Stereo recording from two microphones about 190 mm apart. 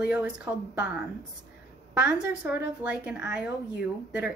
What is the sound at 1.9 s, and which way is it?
A woman's voice, 5° right (ahead or behind).